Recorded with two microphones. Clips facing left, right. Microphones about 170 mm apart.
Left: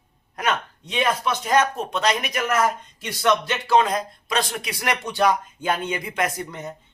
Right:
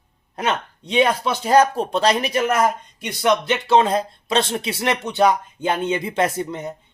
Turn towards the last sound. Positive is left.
turn(degrees=-25)  # may be behind; listen again after turning